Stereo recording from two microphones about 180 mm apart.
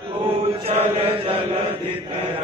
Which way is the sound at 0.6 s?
35° right (ahead or behind).